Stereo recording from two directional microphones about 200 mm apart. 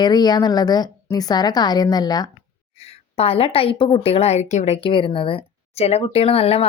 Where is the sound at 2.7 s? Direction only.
30° left (ahead or behind).